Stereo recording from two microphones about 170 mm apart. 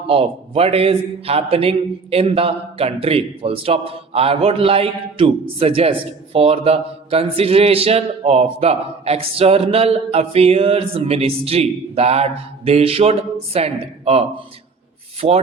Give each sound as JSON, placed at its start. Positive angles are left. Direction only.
{"t": 0.1, "sound": "a man's voice", "side_deg": -35}